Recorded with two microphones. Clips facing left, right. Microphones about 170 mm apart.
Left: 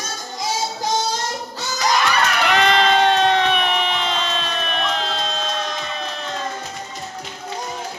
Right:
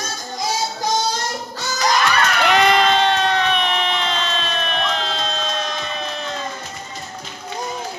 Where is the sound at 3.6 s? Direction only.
10° left (ahead or behind).